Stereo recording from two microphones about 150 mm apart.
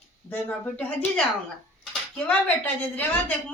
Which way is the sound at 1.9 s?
5° left (ahead or behind).